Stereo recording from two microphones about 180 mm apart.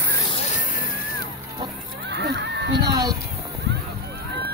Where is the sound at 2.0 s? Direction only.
70° right (ahead or behind).